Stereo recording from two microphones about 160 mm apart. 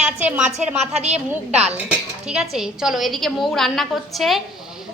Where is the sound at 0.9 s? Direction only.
40° right (ahead or behind).